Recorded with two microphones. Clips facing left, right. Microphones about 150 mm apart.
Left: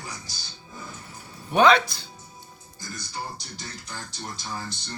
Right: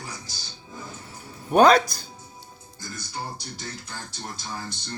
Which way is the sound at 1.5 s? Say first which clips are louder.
Right 2 dB; 40° right (ahead or behind).